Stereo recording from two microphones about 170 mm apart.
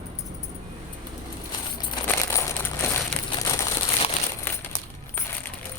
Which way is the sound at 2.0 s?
15° left (ahead or behind).